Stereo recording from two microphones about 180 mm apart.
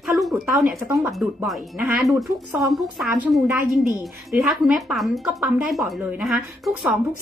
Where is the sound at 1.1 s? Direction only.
Centre (ahead or behind).